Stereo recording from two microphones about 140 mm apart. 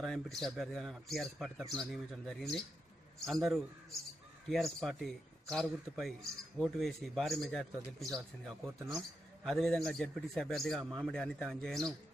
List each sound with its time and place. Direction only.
0.0 s speech: centre (ahead or behind)
1.6 s a man's voice: 30° right (ahead or behind)
1.9 s speech: centre (ahead or behind)